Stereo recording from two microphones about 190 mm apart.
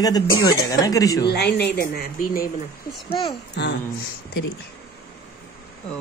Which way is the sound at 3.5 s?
60° left (ahead or behind).